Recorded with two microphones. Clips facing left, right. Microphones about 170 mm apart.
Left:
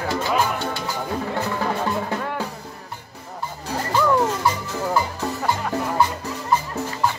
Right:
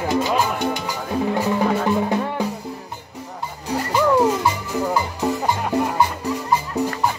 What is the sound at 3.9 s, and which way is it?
Music, 15° right (ahead or behind).